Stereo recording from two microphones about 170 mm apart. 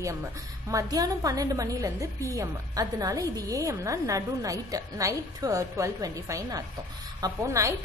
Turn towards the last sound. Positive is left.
turn(degrees=-20)  # may be behind; listen again after turning